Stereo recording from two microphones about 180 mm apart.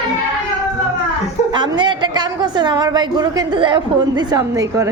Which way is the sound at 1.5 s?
25° right (ahead or behind).